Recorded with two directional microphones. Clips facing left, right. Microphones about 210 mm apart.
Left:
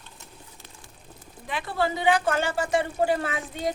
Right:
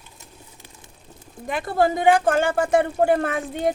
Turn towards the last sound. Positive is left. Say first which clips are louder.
# right 6 dB
turn(degrees=-50)  # may be behind; listen again after turning